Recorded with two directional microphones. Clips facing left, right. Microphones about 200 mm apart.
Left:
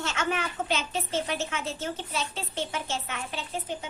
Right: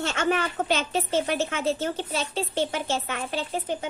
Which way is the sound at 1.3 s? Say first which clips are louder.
Right 6 dB; 55° right (ahead or behind).